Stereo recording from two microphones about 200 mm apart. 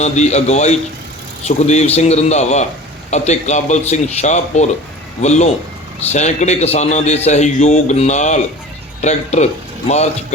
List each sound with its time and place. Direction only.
0.0 s a man's voice: 35° left (ahead or behind)